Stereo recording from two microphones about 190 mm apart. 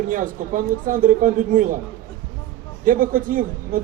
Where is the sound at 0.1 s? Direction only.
45° right (ahead or behind).